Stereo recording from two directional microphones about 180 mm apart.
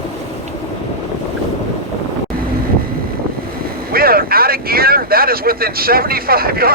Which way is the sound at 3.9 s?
55° right (ahead or behind).